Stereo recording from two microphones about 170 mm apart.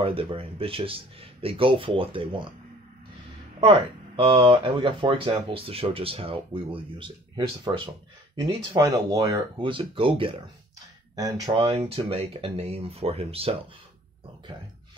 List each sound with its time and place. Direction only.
0.0 s speech: 30° right (ahead or behind)
4.2 s speech: 30° right (ahead or behind)
11.5 s speech: 35° right (ahead or behind)